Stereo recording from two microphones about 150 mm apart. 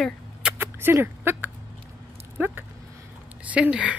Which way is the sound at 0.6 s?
15° right (ahead or behind).